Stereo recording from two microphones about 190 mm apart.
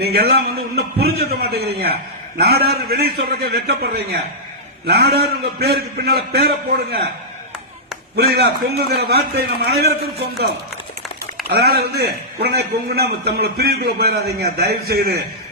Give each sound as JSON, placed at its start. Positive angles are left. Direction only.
{"t": 0.0, "sound": "a man's voice", "side_deg": -55}
{"t": 8.1, "sound": "a man's voice", "side_deg": -55}
{"t": 11.4, "sound": "a man's voice", "side_deg": -55}